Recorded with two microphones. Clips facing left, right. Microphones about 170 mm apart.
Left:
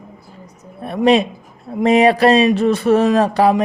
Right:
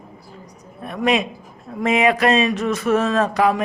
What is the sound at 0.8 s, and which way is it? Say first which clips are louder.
Speech: left 6 dB; 35° left (ahead or behind).